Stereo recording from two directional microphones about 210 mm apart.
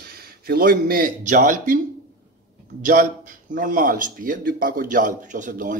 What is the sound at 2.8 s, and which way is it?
Speech, 40° right (ahead or behind).